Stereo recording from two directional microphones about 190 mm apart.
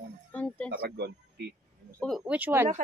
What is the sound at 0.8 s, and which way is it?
Speech, 60° right (ahead or behind).